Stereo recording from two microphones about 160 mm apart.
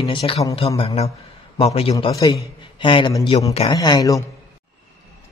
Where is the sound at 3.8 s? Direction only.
25° left (ahead or behind).